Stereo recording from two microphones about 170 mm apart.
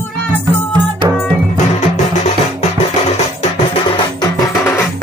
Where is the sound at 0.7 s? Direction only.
25° right (ahead or behind).